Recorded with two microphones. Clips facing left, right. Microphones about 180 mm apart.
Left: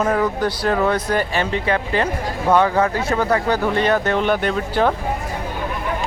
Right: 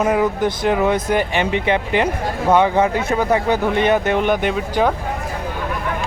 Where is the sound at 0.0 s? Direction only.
10° right (ahead or behind).